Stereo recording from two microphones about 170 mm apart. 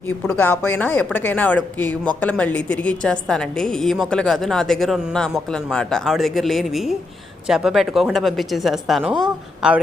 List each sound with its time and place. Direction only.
0.3 s a woman's voice: 10° left (ahead or behind); by 9.8 s 5° right (ahead or behind)